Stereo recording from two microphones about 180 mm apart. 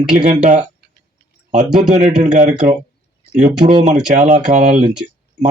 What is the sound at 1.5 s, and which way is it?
Speech, 40° right (ahead or behind).